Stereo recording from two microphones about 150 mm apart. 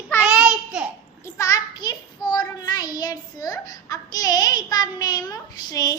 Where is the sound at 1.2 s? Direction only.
20° left (ahead or behind).